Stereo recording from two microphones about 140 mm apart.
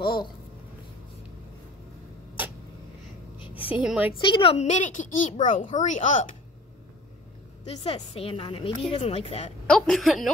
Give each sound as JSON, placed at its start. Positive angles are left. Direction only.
{"t": 0.0, "sound": "speech", "side_deg": 35}
{"t": 3.6, "sound": "a woman's voice", "side_deg": -10}
{"t": 4.2, "sound": "a woman's voice", "side_deg": 35}
{"t": 4.6, "sound": "a woman's voice", "side_deg": 60}
{"t": 7.6, "sound": "a woman's voice", "side_deg": 50}
{"t": 9.7, "sound": "a woman's voice", "side_deg": 5}